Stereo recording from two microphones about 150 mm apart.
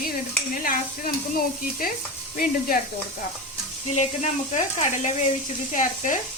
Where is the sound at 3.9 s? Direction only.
50° left (ahead or behind).